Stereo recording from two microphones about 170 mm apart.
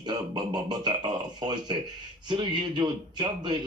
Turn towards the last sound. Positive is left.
turn(degrees=-25)  # may be behind; listen again after turning